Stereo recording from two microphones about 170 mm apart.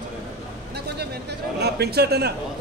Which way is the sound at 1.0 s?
75° right (ahead or behind).